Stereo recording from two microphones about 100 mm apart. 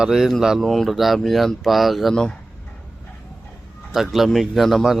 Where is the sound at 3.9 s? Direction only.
Centre (ahead or behind).